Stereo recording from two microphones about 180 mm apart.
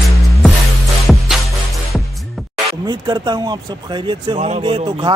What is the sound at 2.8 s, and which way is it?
Speech, 25° right (ahead or behind).